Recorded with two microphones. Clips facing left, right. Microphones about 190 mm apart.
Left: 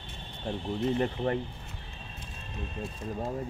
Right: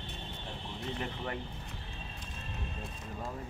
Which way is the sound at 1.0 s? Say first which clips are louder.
Left 9 dB; 35° left (ahead or behind).